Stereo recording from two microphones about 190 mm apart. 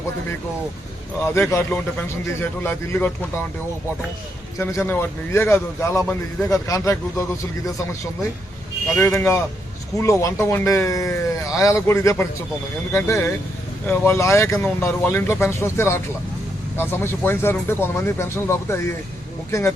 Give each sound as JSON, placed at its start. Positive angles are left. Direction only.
{"t": 1.3, "sound": "speech", "side_deg": 15}
{"t": 4.5, "sound": "speech", "side_deg": 10}
{"t": 9.0, "sound": "speech", "side_deg": 10}